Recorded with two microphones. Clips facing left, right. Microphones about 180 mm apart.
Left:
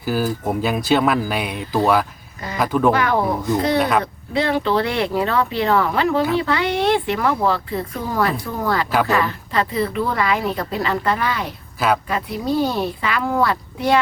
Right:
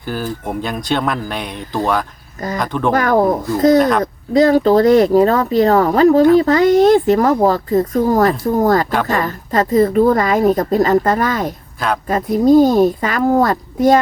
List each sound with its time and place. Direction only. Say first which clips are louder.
0.0 s speech: left 2 dB; 5° left (ahead or behind)
2.9 s speech: right 5 dB; 45° right (ahead or behind)